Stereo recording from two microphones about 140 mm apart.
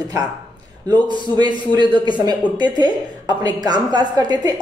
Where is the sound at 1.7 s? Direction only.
30° right (ahead or behind).